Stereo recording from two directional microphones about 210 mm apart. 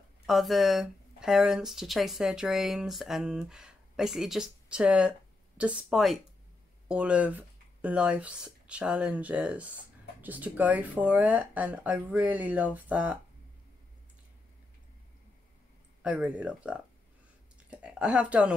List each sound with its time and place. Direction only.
0.3 s speech: centre (ahead or behind)
16.0 s speech: 5° right (ahead or behind)